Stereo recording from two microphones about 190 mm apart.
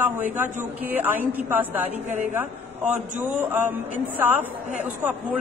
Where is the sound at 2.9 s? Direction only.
10° right (ahead or behind).